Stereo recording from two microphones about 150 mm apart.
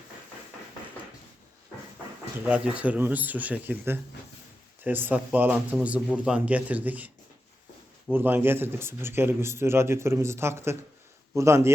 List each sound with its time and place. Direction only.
2.4 s speech: 10° right (ahead or behind)
8.1 s speech: 15° right (ahead or behind)